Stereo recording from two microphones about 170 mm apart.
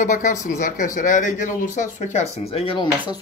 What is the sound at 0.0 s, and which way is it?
Speech, 50° left (ahead or behind).